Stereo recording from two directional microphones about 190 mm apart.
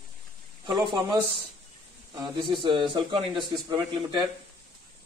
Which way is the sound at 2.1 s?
25° right (ahead or behind).